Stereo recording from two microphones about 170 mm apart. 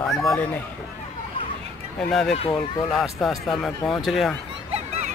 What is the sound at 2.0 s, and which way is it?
Speech, 5° left (ahead or behind).